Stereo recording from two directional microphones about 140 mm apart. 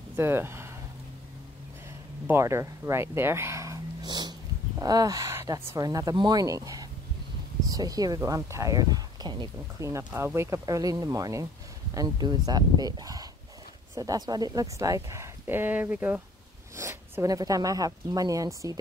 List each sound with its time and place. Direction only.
0.1 s speech: 15° right (ahead or behind)
2.2 s speech: 20° right (ahead or behind)